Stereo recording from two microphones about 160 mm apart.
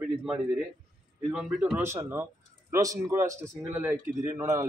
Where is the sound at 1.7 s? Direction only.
15° right (ahead or behind).